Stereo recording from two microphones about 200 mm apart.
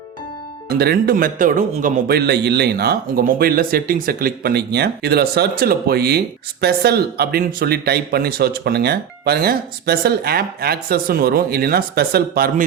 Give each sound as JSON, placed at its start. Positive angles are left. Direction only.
{"t": 0.7, "sound": "a man's voice", "side_deg": -50}